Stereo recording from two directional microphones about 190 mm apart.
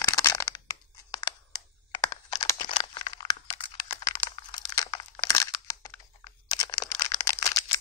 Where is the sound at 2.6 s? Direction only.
30° left (ahead or behind).